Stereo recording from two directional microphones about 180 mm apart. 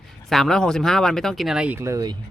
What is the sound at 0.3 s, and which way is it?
Speech, centre (ahead or behind).